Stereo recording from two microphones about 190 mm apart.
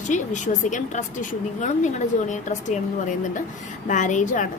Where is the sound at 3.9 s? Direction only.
40° left (ahead or behind).